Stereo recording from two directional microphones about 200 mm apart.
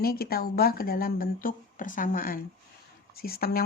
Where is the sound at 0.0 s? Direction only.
50° left (ahead or behind).